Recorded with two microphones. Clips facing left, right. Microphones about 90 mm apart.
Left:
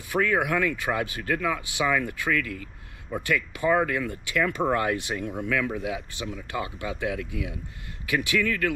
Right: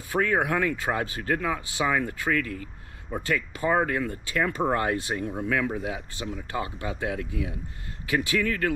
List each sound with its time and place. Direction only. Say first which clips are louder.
0.1 s speech: even; 30° right (ahead or behind)